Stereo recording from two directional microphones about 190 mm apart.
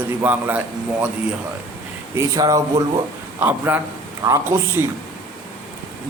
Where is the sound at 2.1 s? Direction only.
20° right (ahead or behind).